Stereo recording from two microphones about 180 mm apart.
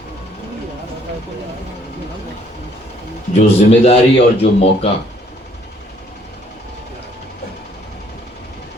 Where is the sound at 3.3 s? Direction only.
35° left (ahead or behind).